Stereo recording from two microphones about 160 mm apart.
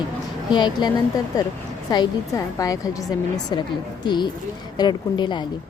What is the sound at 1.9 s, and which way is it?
Speech, 25° left (ahead or behind).